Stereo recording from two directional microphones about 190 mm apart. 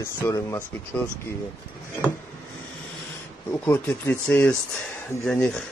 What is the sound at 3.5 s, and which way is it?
Speech, 10° left (ahead or behind).